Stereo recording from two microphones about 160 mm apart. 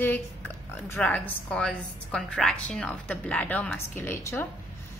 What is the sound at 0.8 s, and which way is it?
A woman's voice, 10° left (ahead or behind).